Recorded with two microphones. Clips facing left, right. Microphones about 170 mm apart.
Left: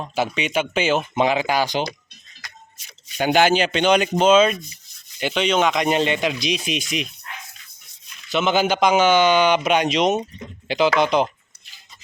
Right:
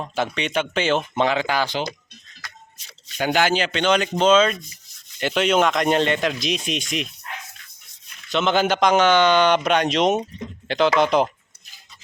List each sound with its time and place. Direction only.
0.0 s speech: 5° left (ahead or behind)
3.2 s speech: 20° left (ahead or behind)
5.2 s a man's voice: centre (ahead or behind)
8.3 s a man's voice: 5° left (ahead or behind)